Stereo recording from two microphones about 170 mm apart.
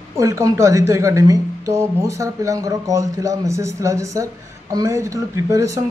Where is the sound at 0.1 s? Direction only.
20° right (ahead or behind).